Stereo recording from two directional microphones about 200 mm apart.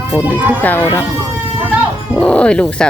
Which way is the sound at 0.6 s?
10° left (ahead or behind).